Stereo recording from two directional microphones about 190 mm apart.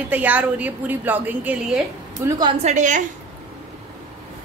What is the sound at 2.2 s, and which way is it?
Speech, 20° right (ahead or behind).